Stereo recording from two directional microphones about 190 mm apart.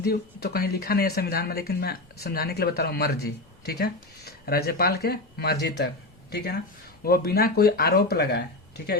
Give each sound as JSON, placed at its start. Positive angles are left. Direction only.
{"t": 0.0, "sound": "speech", "side_deg": 55}